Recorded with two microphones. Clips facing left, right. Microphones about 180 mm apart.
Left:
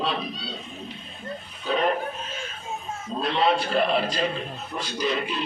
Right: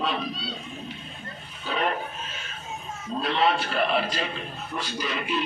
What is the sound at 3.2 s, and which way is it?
Speech, 40° left (ahead or behind).